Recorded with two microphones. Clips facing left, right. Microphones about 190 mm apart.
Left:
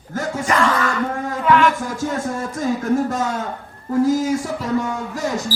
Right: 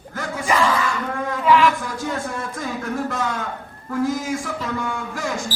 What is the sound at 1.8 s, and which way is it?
Speech, 45° left (ahead or behind).